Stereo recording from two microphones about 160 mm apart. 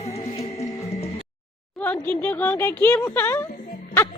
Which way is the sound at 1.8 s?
10° left (ahead or behind).